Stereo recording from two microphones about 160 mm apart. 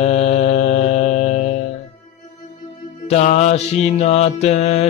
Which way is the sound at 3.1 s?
45° left (ahead or behind).